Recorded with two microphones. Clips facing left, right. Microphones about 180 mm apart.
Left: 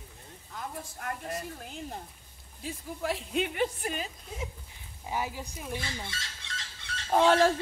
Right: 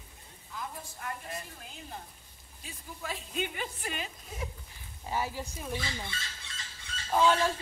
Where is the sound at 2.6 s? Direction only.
75° left (ahead or behind).